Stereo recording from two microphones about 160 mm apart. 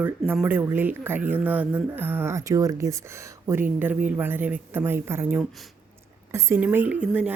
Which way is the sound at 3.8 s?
10° right (ahead or behind).